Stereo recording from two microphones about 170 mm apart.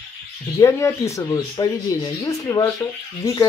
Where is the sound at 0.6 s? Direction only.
15° left (ahead or behind).